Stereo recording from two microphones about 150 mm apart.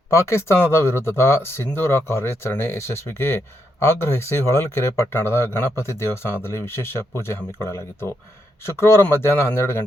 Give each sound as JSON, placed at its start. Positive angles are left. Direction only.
{"t": 0.1, "sound": "speech", "side_deg": 20}